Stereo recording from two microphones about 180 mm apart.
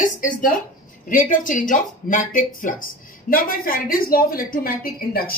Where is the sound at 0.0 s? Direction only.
50° left (ahead or behind).